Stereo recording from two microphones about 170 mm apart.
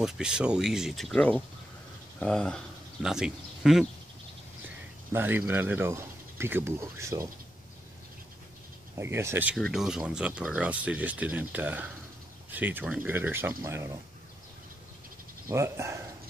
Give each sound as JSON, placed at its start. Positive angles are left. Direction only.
{"t": 0.0, "sound": "speech", "side_deg": -5}
{"t": 5.1, "sound": "speech", "side_deg": -10}
{"t": 8.9, "sound": "speech", "side_deg": -15}
{"t": 9.6, "sound": "speech", "side_deg": 0}
{"t": 15.5, "sound": "speech", "side_deg": -15}